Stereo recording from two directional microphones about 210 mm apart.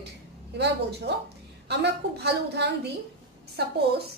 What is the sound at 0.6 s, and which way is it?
A woman's voice, 50° right (ahead or behind).